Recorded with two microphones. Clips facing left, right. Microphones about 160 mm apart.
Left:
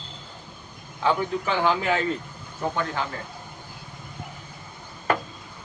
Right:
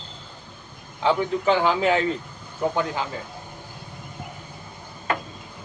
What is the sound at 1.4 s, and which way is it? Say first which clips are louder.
Speech: right 4 dB; 20° right (ahead or behind).